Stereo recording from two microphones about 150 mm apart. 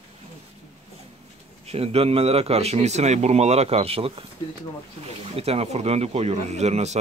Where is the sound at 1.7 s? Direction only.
40° right (ahead or behind).